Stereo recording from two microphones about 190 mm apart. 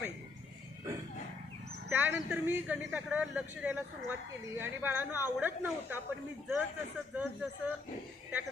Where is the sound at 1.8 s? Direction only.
10° right (ahead or behind).